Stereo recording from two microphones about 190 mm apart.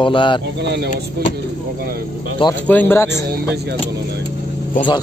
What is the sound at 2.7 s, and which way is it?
Speech, 10° left (ahead or behind).